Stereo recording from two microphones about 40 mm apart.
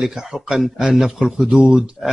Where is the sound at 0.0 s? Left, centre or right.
Centre.